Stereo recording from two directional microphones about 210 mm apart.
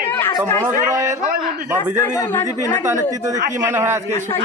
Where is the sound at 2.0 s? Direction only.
15° left (ahead or behind).